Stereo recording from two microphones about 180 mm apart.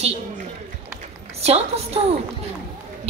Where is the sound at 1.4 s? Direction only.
35° right (ahead or behind).